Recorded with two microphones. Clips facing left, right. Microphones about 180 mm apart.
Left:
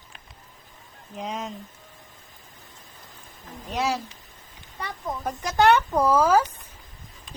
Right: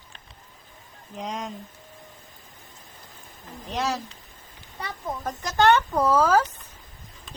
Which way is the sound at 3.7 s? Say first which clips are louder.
Left 1 dB; 10° left (ahead or behind).